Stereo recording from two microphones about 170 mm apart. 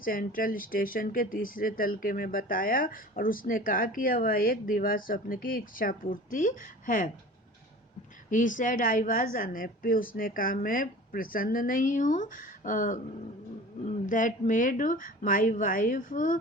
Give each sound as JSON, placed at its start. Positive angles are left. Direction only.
{"t": 0.0, "sound": "speech", "side_deg": 55}
{"t": 8.3, "sound": "speech", "side_deg": 50}